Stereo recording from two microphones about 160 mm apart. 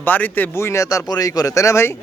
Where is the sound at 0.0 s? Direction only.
10° left (ahead or behind).